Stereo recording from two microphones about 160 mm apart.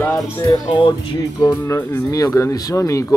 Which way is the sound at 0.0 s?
5° left (ahead or behind).